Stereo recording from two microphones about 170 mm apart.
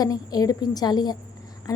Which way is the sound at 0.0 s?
20° left (ahead or behind).